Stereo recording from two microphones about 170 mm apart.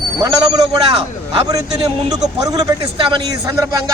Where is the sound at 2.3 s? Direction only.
25° right (ahead or behind).